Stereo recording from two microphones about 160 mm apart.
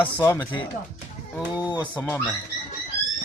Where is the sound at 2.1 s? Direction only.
10° left (ahead or behind).